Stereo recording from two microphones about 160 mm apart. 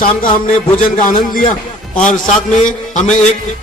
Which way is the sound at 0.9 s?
55° left (ahead or behind).